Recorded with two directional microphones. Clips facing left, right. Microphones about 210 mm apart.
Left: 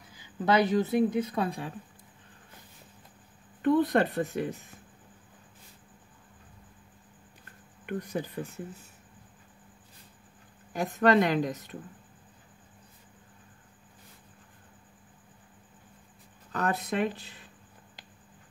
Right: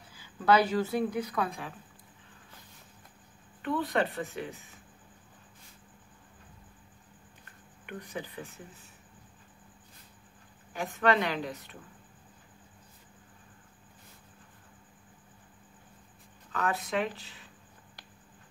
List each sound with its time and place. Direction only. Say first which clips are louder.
0.1 s speech: right 1 dB; 20° left (ahead or behind)
3.6 s speech: left 6 dB; 45° left (ahead or behind)
7.8 s speech: left 7 dB; 45° left (ahead or behind)
10.7 s a woman's voice: left 4 dB; 40° left (ahead or behind)
16.5 s a woman's voice: left 2 dB; 40° left (ahead or behind)